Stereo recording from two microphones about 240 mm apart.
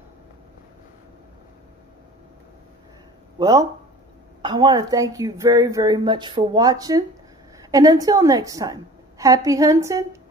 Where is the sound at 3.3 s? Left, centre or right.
Centre.